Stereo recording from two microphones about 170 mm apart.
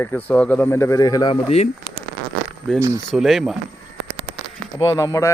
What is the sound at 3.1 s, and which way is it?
Speech, centre (ahead or behind).